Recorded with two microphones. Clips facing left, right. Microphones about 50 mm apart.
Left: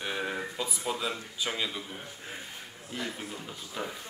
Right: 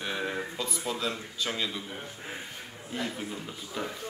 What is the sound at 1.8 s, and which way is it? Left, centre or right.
Speech, centre.